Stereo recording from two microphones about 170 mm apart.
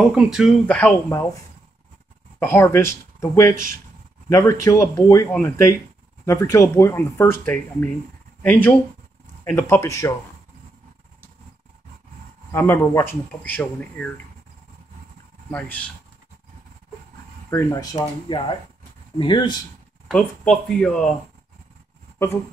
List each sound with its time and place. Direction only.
0.0 s speech: 5° right (ahead or behind)
0.7 s speech: 10° left (ahead or behind)
2.4 s speech: 15° left (ahead or behind)
3.5 s speech: 55° right (ahead or behind)
4.3 s speech: 20° left (ahead or behind)
9.4 s speech: 15° left (ahead or behind)
12.4 s speech: 15° left (ahead or behind)
15.5 s speech: 10° left (ahead or behind)
17.5 s speech: 15° left (ahead or behind)
20.1 s speech: 5° left (ahead or behind)